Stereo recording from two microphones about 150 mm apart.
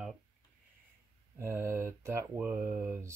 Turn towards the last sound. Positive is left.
turn(degrees=-15)  # may be behind; listen again after turning